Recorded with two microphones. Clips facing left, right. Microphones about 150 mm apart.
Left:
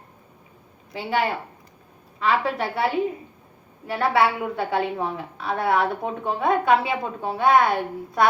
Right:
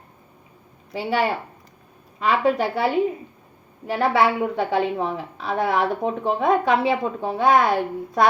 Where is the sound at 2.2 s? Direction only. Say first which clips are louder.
Right 3 dB; 35° right (ahead or behind).